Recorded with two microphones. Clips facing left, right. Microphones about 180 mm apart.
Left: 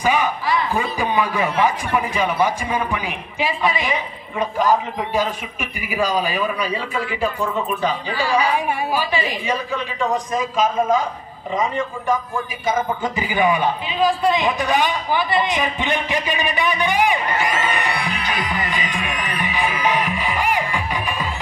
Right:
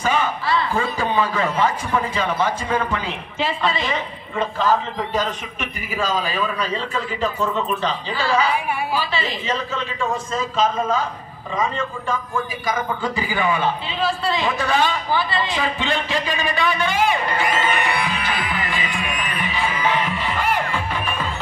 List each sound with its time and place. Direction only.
0.0 s a sound: 15° left (ahead or behind)
2.0 s a man's voice: 15° left (ahead or behind)
17.6 s music: 15° left (ahead or behind)